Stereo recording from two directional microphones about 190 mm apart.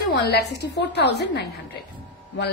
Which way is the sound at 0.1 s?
60° left (ahead or behind).